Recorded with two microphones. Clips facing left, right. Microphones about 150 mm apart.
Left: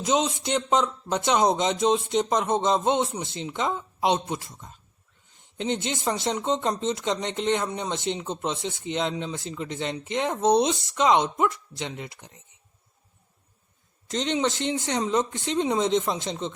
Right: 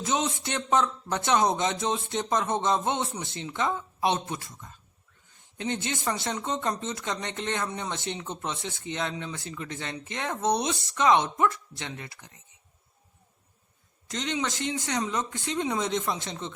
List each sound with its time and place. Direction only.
0.0 s speech: 15° left (ahead or behind)
14.1 s speech: 25° left (ahead or behind)